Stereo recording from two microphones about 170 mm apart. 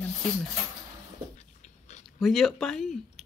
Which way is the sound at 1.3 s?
40° left (ahead or behind).